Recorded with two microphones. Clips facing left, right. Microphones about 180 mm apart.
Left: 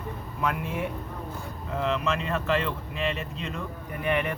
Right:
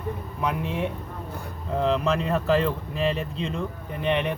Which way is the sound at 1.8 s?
35° right (ahead or behind).